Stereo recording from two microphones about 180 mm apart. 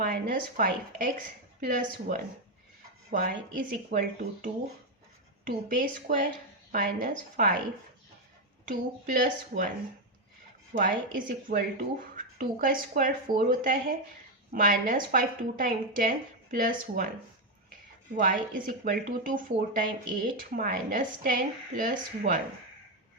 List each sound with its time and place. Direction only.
0.0 s speech: 50° right (ahead or behind)
8.6 s speech: 50° right (ahead or behind)
10.8 s speech: 50° right (ahead or behind)
18.2 s speech: 50° right (ahead or behind)